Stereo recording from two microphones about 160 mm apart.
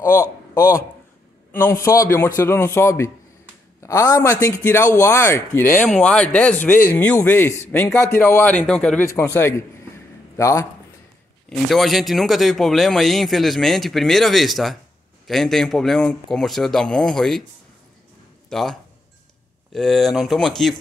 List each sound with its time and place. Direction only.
0.0 s a man's voice: 20° left (ahead or behind)
9.1 s a sound: 15° left (ahead or behind)
11.4 s a man's voice: centre (ahead or behind)
18.5 s a man's voice: centre (ahead or behind)